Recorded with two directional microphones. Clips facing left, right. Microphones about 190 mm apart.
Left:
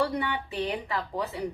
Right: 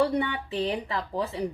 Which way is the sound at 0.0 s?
30° right (ahead or behind).